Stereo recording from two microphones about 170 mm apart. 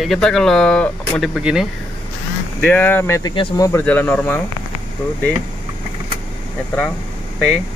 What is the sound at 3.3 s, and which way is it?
Speech, 30° left (ahead or behind).